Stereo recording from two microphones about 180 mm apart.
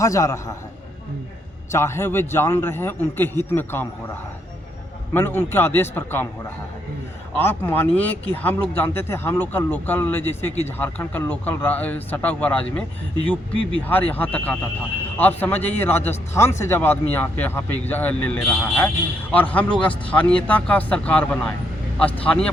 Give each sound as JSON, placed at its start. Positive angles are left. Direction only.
{"t": 0.0, "sound": "speech", "side_deg": 15}
{"t": 1.7, "sound": "speech", "side_deg": 15}
{"t": 5.1, "sound": "speech", "side_deg": 10}
{"t": 7.3, "sound": "speech", "side_deg": 10}
{"t": 13.8, "sound": "speech", "side_deg": 10}